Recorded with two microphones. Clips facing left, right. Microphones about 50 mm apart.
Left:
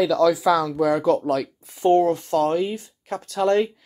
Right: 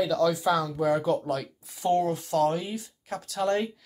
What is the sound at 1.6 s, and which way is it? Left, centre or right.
Speech, left.